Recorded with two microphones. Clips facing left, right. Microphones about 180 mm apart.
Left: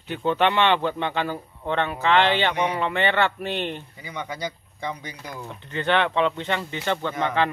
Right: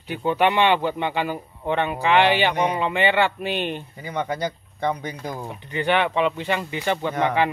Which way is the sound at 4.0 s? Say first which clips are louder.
Right 7 dB; 50° right (ahead or behind).